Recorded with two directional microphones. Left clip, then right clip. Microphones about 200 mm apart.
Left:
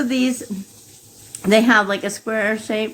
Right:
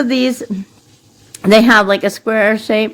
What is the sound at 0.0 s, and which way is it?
Speech, 45° right (ahead or behind).